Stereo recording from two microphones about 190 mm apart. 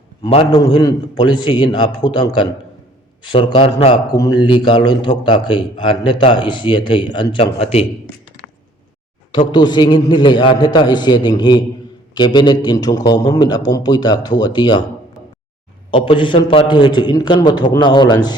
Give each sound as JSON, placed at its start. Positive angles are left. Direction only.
{"t": 0.3, "sound": "a man's voice", "side_deg": 30}
{"t": 9.5, "sound": "a man's voice", "side_deg": 25}
{"t": 15.9, "sound": "a man's voice", "side_deg": 30}